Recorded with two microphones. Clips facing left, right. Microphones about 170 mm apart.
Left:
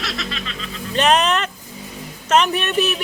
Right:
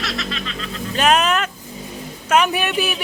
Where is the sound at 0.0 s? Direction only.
Centre (ahead or behind).